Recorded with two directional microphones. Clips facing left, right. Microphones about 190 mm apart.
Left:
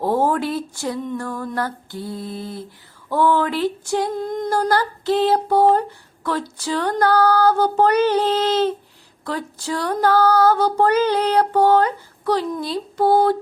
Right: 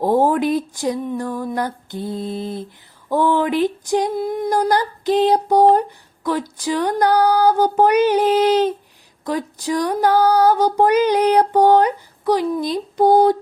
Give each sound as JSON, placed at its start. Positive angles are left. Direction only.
{"t": 0.0, "sound": "speech", "side_deg": -15}